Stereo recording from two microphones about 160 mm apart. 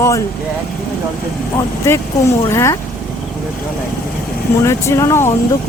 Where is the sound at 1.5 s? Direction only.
20° left (ahead or behind).